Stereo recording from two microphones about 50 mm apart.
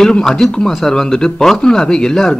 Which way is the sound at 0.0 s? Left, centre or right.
Centre.